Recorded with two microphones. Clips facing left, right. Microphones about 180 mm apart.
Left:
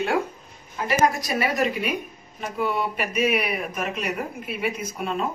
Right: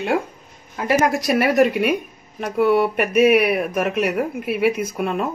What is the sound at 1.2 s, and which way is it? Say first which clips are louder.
Speech: right 8 dB; 65° right (ahead or behind).